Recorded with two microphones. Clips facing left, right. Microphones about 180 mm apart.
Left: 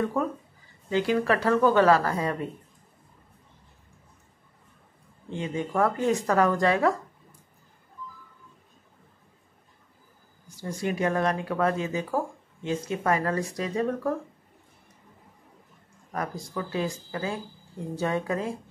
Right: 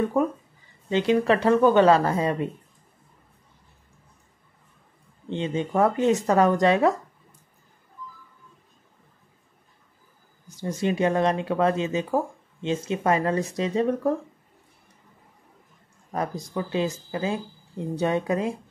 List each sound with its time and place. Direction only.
0.0 s speech: 15° right (ahead or behind)
5.3 s speech: 25° right (ahead or behind)
10.5 s speech: 20° right (ahead or behind)
16.1 s speech: 20° right (ahead or behind)